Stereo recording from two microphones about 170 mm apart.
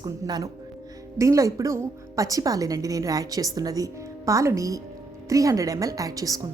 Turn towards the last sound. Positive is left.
turn(degrees=-20)  # may be behind; listen again after turning